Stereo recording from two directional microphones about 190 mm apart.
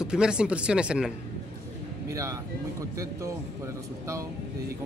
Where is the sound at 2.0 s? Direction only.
15° right (ahead or behind).